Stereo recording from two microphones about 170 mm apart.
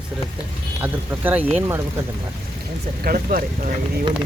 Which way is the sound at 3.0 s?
55° right (ahead or behind).